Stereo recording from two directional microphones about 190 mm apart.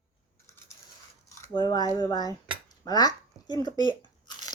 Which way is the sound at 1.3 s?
20° left (ahead or behind).